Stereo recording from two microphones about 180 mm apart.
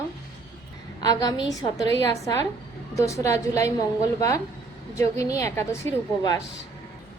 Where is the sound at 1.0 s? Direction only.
20° left (ahead or behind).